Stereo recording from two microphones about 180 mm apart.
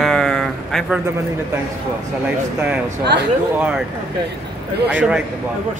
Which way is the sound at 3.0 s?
70° right (ahead or behind).